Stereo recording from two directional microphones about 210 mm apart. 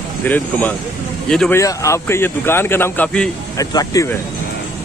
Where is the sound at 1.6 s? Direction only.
15° left (ahead or behind).